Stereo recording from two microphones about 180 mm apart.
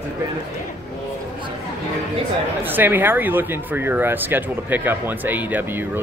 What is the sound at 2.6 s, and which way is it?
A man's voice, 10° right (ahead or behind).